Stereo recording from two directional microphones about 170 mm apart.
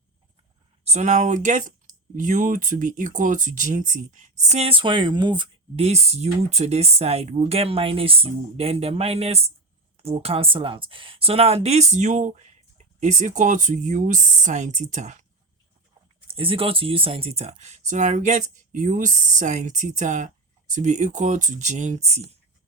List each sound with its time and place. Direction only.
0.9 s speech: 45° right (ahead or behind)
16.2 s speech: 35° right (ahead or behind)